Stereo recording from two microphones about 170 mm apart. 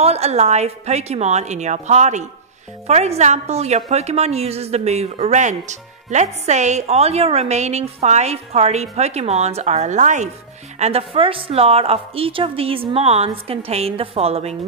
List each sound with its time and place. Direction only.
0.0 s a woman's voice: 40° right (ahead or behind)